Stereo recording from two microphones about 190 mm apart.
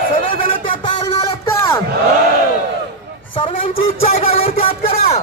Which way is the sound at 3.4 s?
25° left (ahead or behind).